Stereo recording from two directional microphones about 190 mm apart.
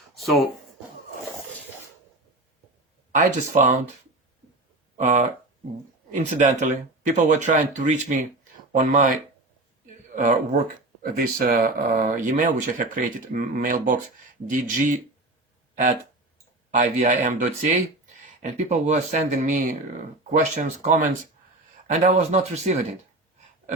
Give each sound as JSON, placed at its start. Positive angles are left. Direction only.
{"t": 0.1, "sound": "a sound", "side_deg": 0}
{"t": 3.1, "sound": "speech", "side_deg": -40}
{"t": 4.9, "sound": "speech", "side_deg": -40}
{"t": 6.2, "sound": "speech", "side_deg": -40}
{"t": 10.2, "sound": "speech", "side_deg": -40}
{"t": 15.7, "sound": "speech", "side_deg": -45}